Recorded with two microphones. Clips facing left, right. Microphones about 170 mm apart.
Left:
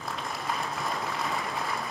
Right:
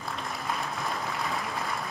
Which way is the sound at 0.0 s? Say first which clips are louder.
Even; centre (ahead or behind).